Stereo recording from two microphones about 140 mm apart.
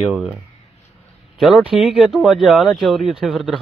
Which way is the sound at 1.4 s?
Centre (ahead or behind).